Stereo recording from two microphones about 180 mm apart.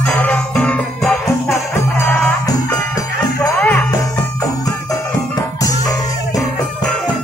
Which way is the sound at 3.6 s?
10° left (ahead or behind).